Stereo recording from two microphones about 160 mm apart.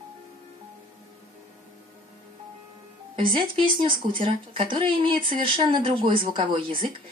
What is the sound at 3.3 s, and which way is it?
Speech, 30° right (ahead or behind).